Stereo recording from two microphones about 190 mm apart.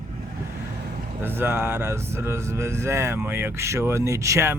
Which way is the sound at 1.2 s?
10° right (ahead or behind).